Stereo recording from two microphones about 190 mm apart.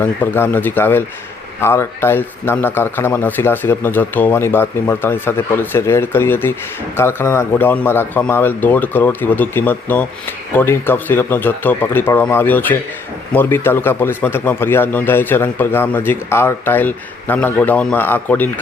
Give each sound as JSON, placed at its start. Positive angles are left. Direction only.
{"t": 0.0, "sound": "speech", "side_deg": 10}